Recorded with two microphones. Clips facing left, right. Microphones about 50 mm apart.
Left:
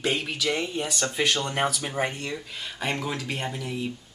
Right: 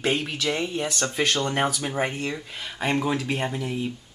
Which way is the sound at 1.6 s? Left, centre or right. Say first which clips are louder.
Right 1 dB; centre.